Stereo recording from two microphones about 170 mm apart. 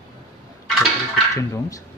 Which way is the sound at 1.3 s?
20° left (ahead or behind).